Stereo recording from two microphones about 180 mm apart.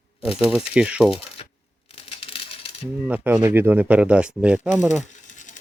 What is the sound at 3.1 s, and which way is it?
Speech, 10° right (ahead or behind).